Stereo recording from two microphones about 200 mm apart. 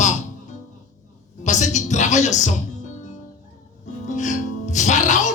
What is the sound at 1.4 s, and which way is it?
Speech, 35° left (ahead or behind).